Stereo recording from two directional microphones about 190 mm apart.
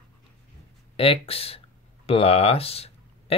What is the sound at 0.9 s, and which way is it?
Speech, 30° left (ahead or behind).